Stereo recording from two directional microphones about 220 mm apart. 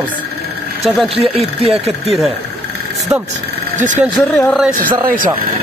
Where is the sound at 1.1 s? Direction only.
25° right (ahead or behind).